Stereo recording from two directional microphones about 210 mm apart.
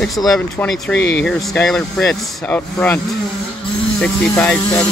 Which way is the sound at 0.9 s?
55° left (ahead or behind).